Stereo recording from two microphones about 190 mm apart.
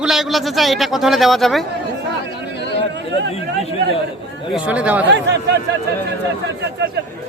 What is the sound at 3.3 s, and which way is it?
Speech, 30° left (ahead or behind).